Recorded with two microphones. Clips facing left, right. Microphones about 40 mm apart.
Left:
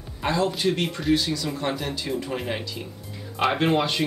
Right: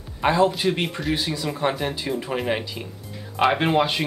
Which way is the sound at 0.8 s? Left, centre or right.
Centre.